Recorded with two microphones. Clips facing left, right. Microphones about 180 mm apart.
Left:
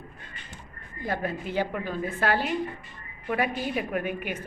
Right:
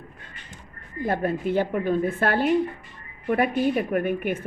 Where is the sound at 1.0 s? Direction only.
50° right (ahead or behind).